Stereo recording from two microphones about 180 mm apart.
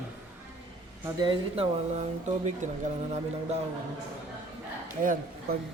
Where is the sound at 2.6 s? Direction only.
45° right (ahead or behind).